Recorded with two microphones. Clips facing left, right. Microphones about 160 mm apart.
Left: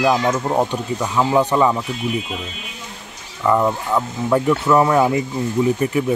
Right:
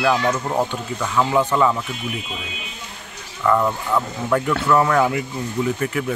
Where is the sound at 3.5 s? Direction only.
15° left (ahead or behind).